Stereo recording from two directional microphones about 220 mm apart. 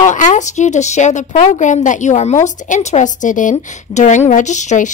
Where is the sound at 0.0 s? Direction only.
35° left (ahead or behind).